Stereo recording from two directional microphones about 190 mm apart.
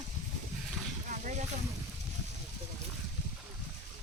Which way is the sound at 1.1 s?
40° right (ahead or behind).